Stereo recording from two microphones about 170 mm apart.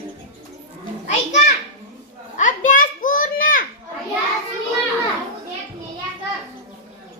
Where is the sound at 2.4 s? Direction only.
50° left (ahead or behind).